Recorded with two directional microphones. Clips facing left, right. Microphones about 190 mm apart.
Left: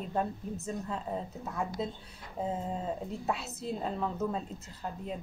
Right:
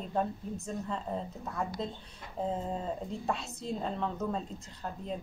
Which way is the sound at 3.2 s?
5° left (ahead or behind).